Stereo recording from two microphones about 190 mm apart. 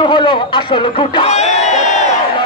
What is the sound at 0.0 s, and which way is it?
Music, 25° left (ahead or behind).